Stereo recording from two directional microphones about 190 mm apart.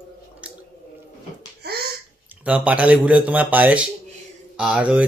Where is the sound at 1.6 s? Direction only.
60° right (ahead or behind).